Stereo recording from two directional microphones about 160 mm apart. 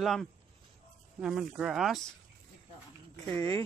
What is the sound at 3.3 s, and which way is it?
Speech, 15° left (ahead or behind).